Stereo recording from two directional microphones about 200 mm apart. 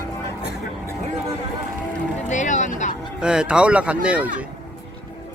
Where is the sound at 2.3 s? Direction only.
40° left (ahead or behind).